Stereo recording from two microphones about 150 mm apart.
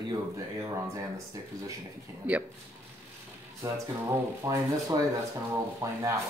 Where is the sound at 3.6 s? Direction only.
20° right (ahead or behind).